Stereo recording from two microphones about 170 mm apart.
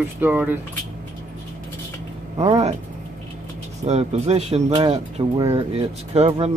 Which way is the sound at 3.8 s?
40° right (ahead or behind).